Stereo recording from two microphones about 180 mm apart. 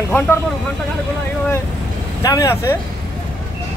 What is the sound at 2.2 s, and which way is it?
Speech, 20° left (ahead or behind).